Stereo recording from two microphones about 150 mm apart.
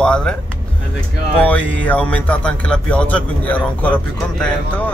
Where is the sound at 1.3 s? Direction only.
10° left (ahead or behind).